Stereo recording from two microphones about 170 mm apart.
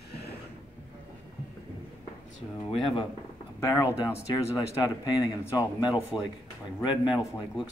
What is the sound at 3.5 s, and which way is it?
Speech, 15° left (ahead or behind).